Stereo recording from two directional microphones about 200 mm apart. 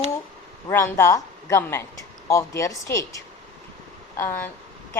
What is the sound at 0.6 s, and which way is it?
A woman's voice, 15° left (ahead or behind).